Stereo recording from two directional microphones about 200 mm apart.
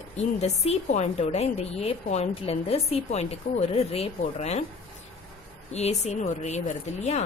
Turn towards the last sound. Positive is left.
turn(degrees=35)  # may be behind; listen again after turning